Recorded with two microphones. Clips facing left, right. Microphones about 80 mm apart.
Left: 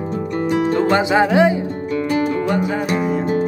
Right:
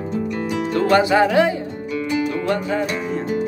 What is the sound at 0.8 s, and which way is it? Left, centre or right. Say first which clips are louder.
Speech: right 3 dB; left.